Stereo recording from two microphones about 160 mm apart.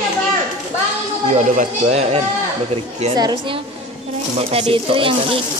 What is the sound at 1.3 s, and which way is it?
Speech, 50° right (ahead or behind).